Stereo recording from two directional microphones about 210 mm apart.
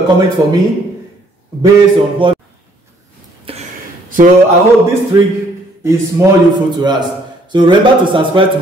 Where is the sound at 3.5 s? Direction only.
25° right (ahead or behind).